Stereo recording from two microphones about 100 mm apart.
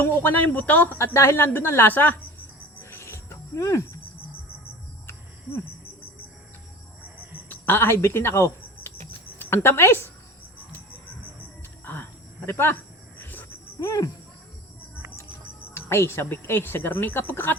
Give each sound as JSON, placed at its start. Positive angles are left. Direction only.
{"t": 0.0, "sound": "a woman's voice", "side_deg": 20}
{"t": 2.9, "sound": "cricket", "side_deg": 25}
{"t": 7.4, "sound": "a woman's voice", "side_deg": 20}
{"t": 12.5, "sound": "cricket", "side_deg": 25}
{"t": 13.7, "sound": "cricket", "side_deg": 35}
{"t": 15.7, "sound": "a woman's voice", "side_deg": 25}